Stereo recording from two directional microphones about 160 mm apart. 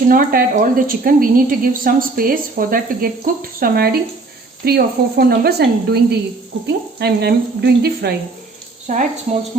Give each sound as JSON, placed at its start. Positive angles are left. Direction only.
{"t": 0.1, "sound": "a woman's voice", "side_deg": -65}
{"t": 8.9, "sound": "speech", "side_deg": -50}